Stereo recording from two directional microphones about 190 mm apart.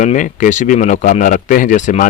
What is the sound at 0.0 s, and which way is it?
Speech, 40° left (ahead or behind).